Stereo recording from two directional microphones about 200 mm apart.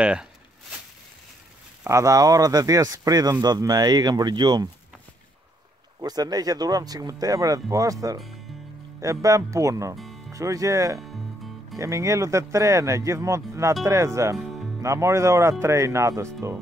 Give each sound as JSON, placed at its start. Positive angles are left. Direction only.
{"t": 0.0, "sound": "speech", "side_deg": -5}
{"t": 1.9, "sound": "speech", "side_deg": -15}
{"t": 5.9, "sound": "speech", "side_deg": -20}
{"t": 9.9, "sound": "music", "side_deg": 0}
{"t": 10.3, "sound": "speech", "side_deg": -15}